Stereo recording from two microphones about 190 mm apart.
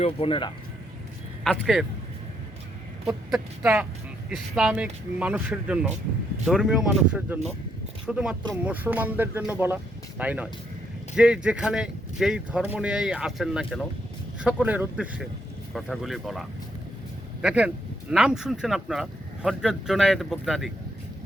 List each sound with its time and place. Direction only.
0.0 s speech: 30° left (ahead or behind)
1.5 s speech: centre (ahead or behind)
3.3 s speech: 10° right (ahead or behind)